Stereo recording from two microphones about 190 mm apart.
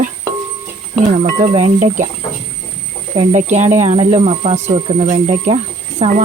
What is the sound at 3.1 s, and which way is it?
Speech, 35° right (ahead or behind).